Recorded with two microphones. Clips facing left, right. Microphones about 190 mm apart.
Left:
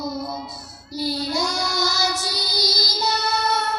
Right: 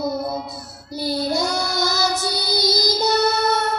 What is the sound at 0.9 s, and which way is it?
Child singing, 55° right (ahead or behind).